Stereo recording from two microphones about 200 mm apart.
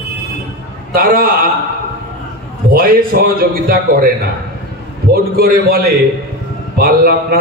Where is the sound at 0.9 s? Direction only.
45° right (ahead or behind).